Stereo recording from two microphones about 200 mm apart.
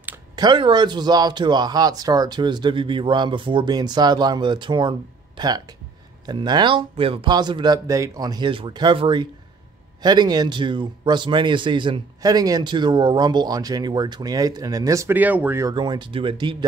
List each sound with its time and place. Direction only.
0.4 s speech: 25° right (ahead or behind)